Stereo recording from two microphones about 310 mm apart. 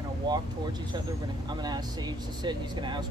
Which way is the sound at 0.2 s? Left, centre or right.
Centre.